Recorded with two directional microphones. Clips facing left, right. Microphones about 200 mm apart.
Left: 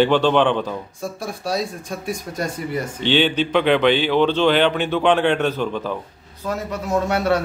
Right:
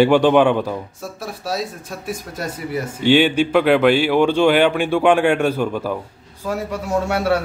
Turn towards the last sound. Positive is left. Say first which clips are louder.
# even
turn(degrees=-10)  # may be behind; listen again after turning